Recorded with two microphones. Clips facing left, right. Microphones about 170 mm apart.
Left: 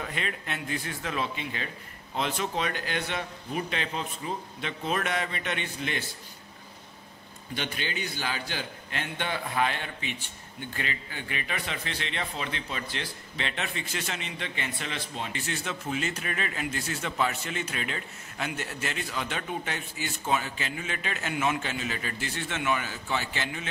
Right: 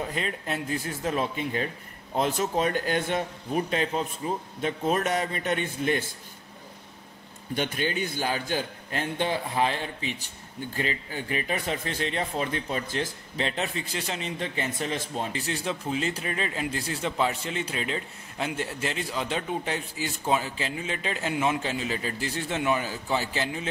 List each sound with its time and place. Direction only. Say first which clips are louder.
0.1 s a man's voice: right 4 dB; 35° right (ahead or behind)
7.5 s a man's voice: right 6 dB; 45° right (ahead or behind)